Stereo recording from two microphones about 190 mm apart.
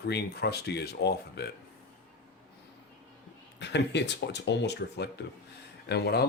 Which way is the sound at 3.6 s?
65° left (ahead or behind).